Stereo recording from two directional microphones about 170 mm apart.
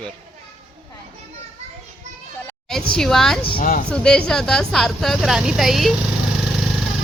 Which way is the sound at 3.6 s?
55° left (ahead or behind).